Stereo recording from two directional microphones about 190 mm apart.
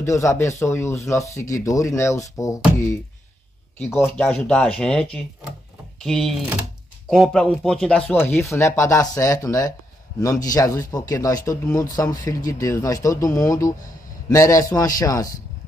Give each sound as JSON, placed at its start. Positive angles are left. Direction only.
{"t": 0.0, "sound": "speech", "side_deg": 15}
{"t": 3.7, "sound": "speech", "side_deg": 10}